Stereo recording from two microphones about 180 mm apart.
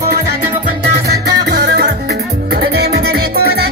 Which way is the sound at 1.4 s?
65° right (ahead or behind).